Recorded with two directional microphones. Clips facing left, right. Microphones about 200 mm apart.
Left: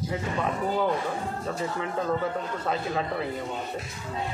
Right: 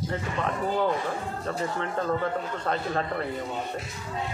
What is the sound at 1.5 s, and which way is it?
A man's voice, 5° left (ahead or behind).